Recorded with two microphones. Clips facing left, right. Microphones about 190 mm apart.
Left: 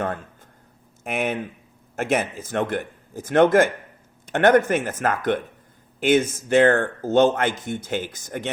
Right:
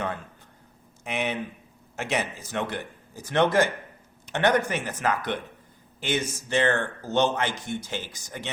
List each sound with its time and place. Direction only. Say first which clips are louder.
1.0 s speech: left 4 dB; 50° left (ahead or behind)